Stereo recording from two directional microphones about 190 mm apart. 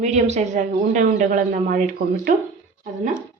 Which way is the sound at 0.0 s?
35° right (ahead or behind).